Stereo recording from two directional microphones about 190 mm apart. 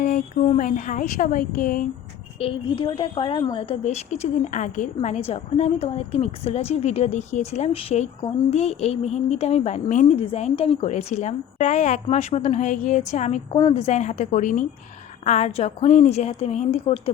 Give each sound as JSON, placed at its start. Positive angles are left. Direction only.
{"t": 0.0, "sound": "speech", "side_deg": 45}
{"t": 2.4, "sound": "a woman's voice", "side_deg": 25}